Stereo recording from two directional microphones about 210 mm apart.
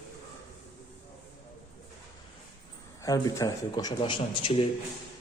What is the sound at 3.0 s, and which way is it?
Speech, 15° left (ahead or behind).